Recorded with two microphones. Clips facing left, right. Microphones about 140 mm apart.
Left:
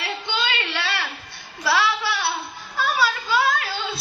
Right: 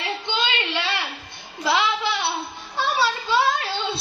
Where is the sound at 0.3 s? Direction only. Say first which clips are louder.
Right 1 dB; 20° right (ahead or behind).